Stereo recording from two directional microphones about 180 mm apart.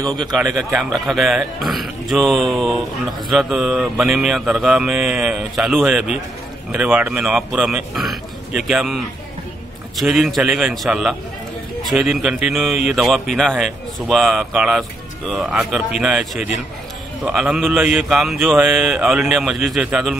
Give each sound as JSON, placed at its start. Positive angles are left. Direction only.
{"t": 0.2, "sound": "speech", "side_deg": -20}
{"t": 0.6, "sound": "a man's voice", "side_deg": 0}